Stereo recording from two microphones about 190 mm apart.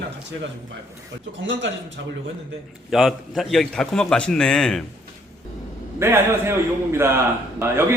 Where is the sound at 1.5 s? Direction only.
75° right (ahead or behind).